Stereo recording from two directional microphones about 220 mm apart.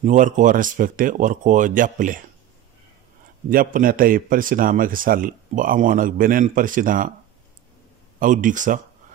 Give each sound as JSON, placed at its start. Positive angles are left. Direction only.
{"t": 0.0, "sound": "a man's voice", "side_deg": -35}
{"t": 3.4, "sound": "a man's voice", "side_deg": -40}
{"t": 8.2, "sound": "a man's voice", "side_deg": -35}